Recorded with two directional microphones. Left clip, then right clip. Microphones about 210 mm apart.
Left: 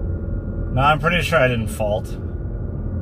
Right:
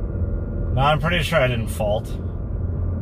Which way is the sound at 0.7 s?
20° left (ahead or behind).